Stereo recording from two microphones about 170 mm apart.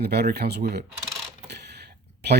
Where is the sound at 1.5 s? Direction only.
75° right (ahead or behind).